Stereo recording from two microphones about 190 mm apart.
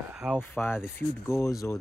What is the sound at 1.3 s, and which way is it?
Speech, 15° left (ahead or behind).